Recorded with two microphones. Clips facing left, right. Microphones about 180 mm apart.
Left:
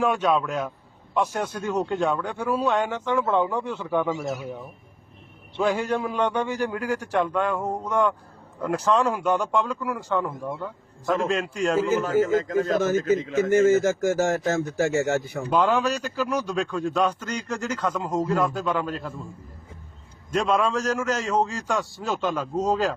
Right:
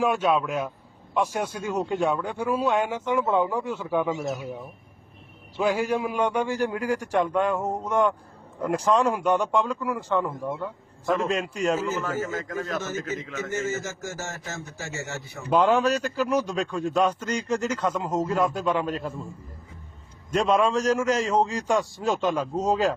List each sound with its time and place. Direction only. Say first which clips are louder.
0.0 s a man's voice: even; 5° right (ahead or behind)
4.1 s a man's voice: even; 20° right (ahead or behind)
5.5 s a man's voice: even; 5° right (ahead or behind)
11.8 s a man's voice: left 7 dB; 10° left (ahead or behind)
12.3 s a man's voice: left 9 dB; 25° left (ahead or behind)
12.8 s a man's voice: left 9 dB; 50° left (ahead or behind)
13.1 s a man's voice: left 10 dB; 30° left (ahead or behind)
13.6 s a man's voice: left 14 dB; 55° left (ahead or behind)
15.5 s a man's voice: right 2 dB; 5° right (ahead or behind)
20.3 s a man's voice: right 1 dB; 10° right (ahead or behind)